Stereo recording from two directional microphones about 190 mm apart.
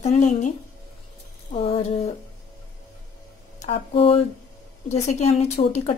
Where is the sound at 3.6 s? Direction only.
30° left (ahead or behind).